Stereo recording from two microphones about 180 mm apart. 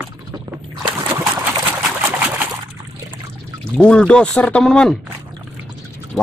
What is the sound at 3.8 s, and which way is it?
Speech, 5° left (ahead or behind).